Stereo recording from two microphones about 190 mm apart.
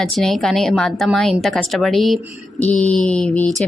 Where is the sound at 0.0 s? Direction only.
Centre (ahead or behind).